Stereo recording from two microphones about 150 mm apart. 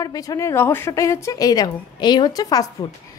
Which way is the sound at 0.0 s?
25° left (ahead or behind).